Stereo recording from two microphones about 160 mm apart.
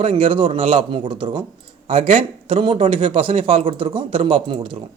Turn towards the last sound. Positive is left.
turn(degrees=-30)  # may be behind; listen again after turning